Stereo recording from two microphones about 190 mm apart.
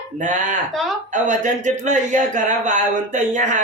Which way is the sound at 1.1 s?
40° right (ahead or behind).